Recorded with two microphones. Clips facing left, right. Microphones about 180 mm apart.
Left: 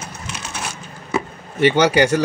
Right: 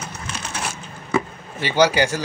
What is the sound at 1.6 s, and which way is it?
Speech, 65° left (ahead or behind).